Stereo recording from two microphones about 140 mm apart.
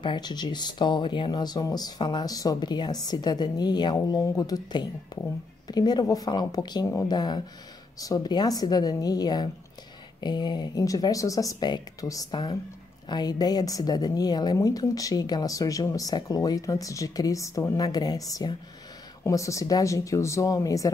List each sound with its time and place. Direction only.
0.0 s a woman's voice: 30° left (ahead or behind)